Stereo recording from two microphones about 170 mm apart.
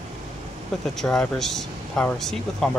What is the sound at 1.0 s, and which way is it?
Speech, centre (ahead or behind).